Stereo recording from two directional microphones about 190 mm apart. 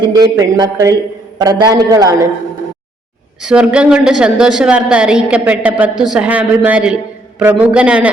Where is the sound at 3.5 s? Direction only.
5° right (ahead or behind).